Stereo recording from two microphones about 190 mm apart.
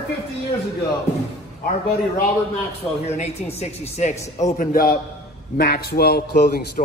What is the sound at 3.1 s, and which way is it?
A man's voice, 35° left (ahead or behind).